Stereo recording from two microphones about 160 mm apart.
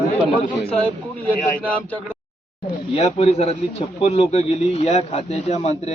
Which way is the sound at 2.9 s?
40° left (ahead or behind).